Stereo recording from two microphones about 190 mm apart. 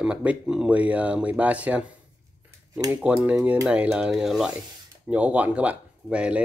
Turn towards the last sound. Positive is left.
turn(degrees=-5)  # may be behind; listen again after turning